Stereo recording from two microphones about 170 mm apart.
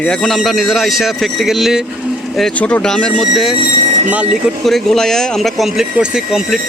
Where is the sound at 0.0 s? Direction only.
5° left (ahead or behind).